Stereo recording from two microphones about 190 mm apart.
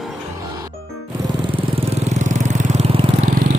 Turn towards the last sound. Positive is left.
turn(degrees=-45)  # may be behind; listen again after turning